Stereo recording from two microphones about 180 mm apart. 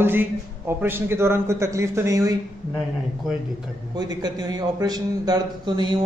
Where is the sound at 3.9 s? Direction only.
20° right (ahead or behind).